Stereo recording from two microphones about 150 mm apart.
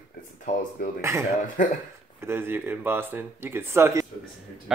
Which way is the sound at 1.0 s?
20° right (ahead or behind).